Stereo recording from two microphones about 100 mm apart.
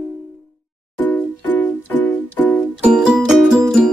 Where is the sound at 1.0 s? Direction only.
15° left (ahead or behind).